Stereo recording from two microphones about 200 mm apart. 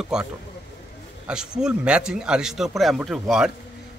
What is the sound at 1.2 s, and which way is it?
Speech, 5° right (ahead or behind).